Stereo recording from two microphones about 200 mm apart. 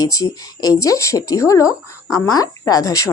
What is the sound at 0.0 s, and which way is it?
Speech, 15° left (ahead or behind).